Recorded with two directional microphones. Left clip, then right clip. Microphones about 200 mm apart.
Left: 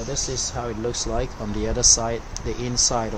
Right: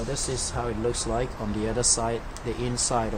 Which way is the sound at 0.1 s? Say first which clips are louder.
Left 7 dB; 15° left (ahead or behind).